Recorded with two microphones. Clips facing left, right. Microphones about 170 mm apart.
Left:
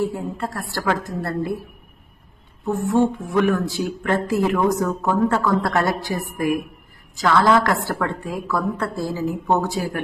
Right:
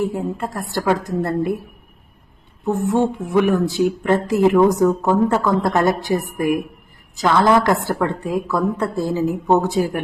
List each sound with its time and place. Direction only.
0.0 s speech: 20° right (ahead or behind)
2.6 s speech: 20° right (ahead or behind)